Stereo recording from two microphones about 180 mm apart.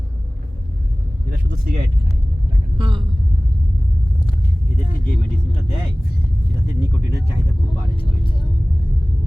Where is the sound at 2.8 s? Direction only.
25° right (ahead or behind).